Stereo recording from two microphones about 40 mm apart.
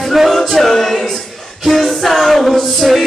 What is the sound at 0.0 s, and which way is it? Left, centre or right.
A capella, centre.